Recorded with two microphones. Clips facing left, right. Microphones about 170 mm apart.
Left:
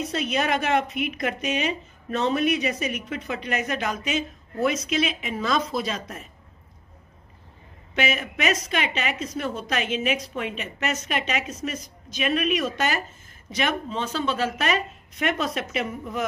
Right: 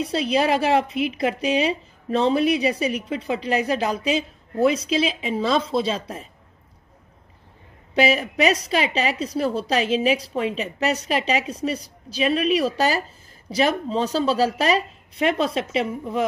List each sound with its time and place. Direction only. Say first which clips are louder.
0.0 s speech: right 5 dB; 30° right (ahead or behind)
7.9 s speech: right 6 dB; 35° right (ahead or behind)